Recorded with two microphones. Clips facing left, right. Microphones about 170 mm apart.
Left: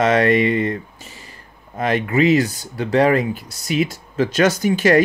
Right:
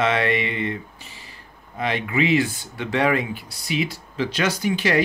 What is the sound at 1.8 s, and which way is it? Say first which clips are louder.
Speech: left 6 dB; 45° left (ahead or behind).